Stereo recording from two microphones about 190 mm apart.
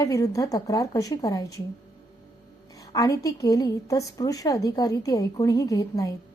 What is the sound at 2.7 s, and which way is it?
A woman's voice, 20° left (ahead or behind).